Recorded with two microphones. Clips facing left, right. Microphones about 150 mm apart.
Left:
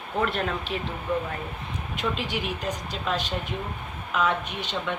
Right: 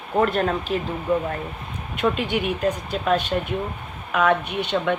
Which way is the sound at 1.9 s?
55° right (ahead or behind).